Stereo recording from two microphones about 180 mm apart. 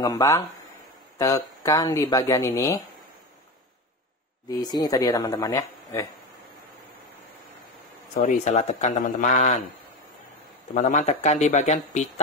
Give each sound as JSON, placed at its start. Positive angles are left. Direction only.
{"t": 0.0, "sound": "speech", "side_deg": 15}
{"t": 4.5, "sound": "speech", "side_deg": 20}
{"t": 8.2, "sound": "speech", "side_deg": 40}
{"t": 10.7, "sound": "speech", "side_deg": 45}